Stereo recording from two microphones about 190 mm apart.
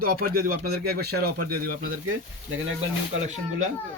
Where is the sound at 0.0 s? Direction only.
50° right (ahead or behind).